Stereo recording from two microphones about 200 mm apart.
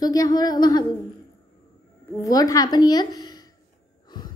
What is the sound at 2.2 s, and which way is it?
A woman's voice, 15° left (ahead or behind).